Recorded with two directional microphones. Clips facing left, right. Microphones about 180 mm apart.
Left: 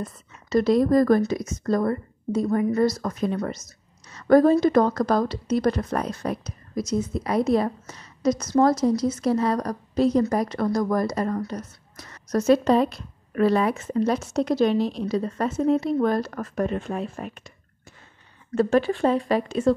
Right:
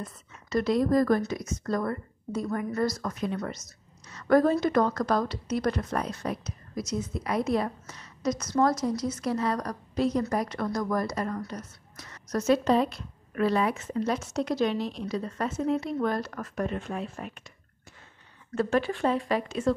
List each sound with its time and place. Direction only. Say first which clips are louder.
0.5 s speech: left 5 dB; 35° left (ahead or behind)
3.0 s speech: left 5 dB; 40° left (ahead or behind)
5.9 s speech: left 4 dB; 45° left (ahead or behind)
6.9 s speech: left 5 dB; 30° left (ahead or behind)
18.5 s speech: left 6 dB; 35° left (ahead or behind)